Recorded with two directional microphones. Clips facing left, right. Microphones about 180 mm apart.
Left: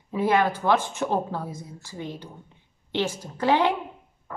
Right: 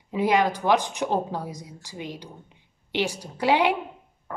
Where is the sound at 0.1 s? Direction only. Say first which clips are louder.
Even; 15° right (ahead or behind).